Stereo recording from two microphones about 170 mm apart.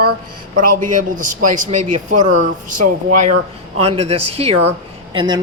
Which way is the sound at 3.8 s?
35° right (ahead or behind).